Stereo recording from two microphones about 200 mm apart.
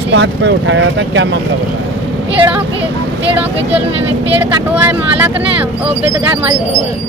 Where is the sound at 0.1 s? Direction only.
65° right (ahead or behind).